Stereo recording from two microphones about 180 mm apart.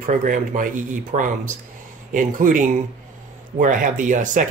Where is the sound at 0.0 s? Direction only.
45° right (ahead or behind).